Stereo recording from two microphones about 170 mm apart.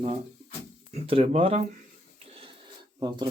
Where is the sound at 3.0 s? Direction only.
25° right (ahead or behind).